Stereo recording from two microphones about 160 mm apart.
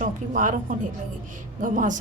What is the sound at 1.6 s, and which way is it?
Speech, 55° right (ahead or behind).